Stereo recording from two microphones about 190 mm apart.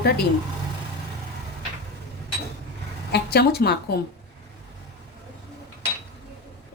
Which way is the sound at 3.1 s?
55° left (ahead or behind).